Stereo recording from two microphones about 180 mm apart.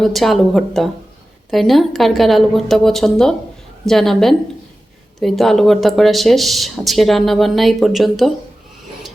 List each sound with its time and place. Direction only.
0.0 s speech: centre (ahead or behind)